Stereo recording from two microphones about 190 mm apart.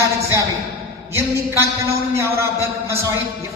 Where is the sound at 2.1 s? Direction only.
15° right (ahead or behind).